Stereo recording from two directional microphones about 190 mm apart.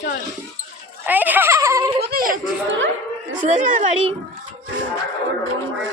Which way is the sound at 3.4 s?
40° right (ahead or behind).